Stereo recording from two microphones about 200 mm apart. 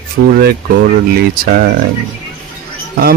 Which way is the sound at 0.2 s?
65° right (ahead or behind).